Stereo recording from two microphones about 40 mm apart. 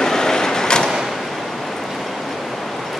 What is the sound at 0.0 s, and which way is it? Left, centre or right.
Vehicle, centre.